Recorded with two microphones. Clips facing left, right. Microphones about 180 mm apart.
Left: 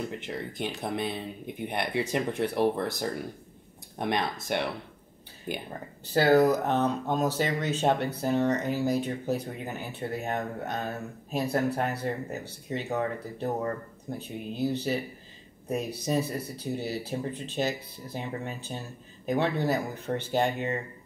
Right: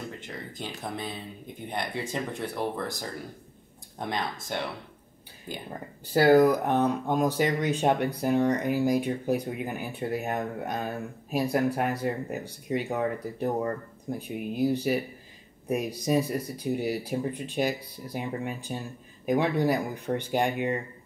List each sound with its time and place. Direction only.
0.6 s speech: 20° left (ahead or behind)
4.0 s speech: 20° left (ahead or behind)
6.1 s speech: 10° right (ahead or behind)